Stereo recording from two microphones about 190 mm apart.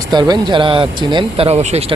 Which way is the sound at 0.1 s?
20° right (ahead or behind).